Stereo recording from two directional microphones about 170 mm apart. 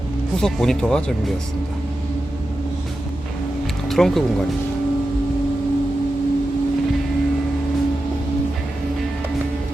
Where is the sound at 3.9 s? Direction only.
Centre (ahead or behind).